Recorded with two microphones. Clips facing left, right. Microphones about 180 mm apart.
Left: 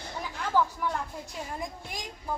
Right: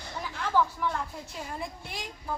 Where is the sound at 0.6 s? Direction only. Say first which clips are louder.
Even; 10° left (ahead or behind).